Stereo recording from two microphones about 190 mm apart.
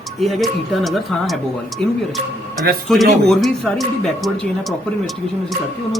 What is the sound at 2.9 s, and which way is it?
Speech, centre (ahead or behind).